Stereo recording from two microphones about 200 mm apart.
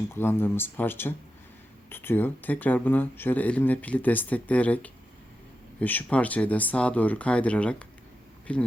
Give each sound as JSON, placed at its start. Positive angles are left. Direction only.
{"t": 0.1, "sound": "speech", "side_deg": 10}